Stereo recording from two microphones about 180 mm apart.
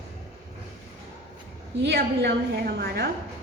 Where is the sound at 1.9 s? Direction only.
65° right (ahead or behind).